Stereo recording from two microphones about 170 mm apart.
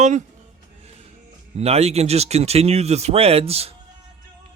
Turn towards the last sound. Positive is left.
turn(degrees=-35)  # may be behind; listen again after turning